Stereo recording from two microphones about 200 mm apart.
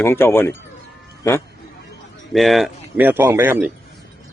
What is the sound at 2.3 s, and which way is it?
Speech, centre (ahead or behind).